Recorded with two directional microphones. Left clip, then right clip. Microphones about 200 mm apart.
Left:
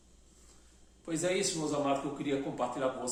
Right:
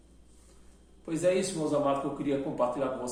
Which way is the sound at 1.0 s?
15° left (ahead or behind).